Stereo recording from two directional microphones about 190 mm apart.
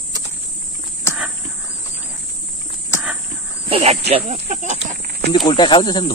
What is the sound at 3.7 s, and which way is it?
Speech, 30° right (ahead or behind).